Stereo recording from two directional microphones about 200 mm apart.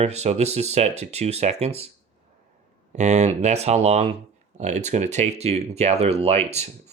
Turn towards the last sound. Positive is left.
turn(degrees=-30)  # may be behind; listen again after turning